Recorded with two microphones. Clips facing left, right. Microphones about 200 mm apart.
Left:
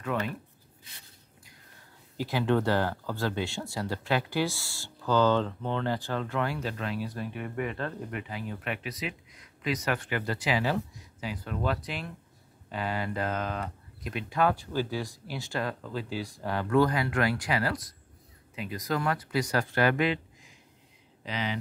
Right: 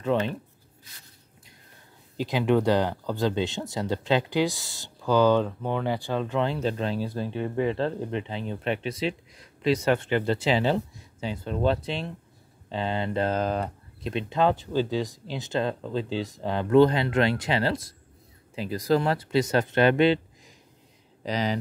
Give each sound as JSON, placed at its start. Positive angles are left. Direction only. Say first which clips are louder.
{"t": 0.0, "sound": "speech", "louder": "right 6 dB", "side_deg": -25}
{"t": 2.1, "sound": "speech", "louder": "right 4 dB", "side_deg": -15}